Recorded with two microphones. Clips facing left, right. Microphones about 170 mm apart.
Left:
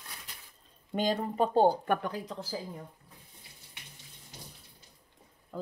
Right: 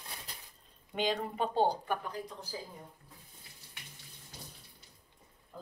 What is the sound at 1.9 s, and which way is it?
Speech, 85° left.